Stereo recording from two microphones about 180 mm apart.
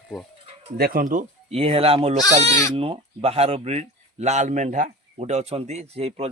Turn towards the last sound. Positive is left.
turn(degrees=-35)  # may be behind; listen again after turning